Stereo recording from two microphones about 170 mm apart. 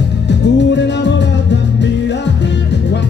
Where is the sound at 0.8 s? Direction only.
90° left.